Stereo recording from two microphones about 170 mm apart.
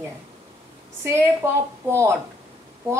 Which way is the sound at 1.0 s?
15° right (ahead or behind).